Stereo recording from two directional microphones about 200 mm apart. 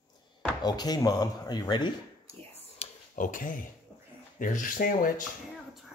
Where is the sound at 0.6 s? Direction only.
20° left (ahead or behind).